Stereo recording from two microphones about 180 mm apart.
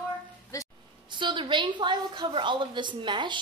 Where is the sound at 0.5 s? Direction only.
15° left (ahead or behind).